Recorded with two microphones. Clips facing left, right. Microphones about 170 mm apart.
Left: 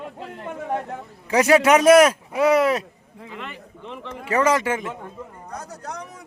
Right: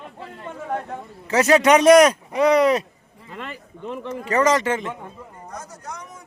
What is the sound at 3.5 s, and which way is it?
Speech, 45° right (ahead or behind).